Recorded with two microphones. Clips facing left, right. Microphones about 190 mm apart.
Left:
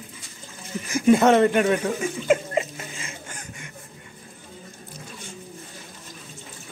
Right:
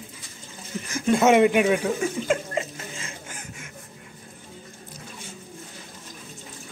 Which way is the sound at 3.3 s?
5° right (ahead or behind).